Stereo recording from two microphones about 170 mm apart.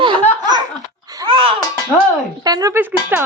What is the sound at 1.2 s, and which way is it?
Babbling, 30° right (ahead or behind).